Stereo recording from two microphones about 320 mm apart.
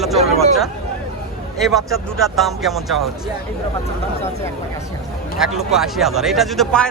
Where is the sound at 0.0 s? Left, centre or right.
Centre.